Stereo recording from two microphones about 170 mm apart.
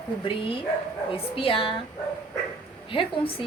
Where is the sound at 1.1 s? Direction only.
35° left (ahead or behind).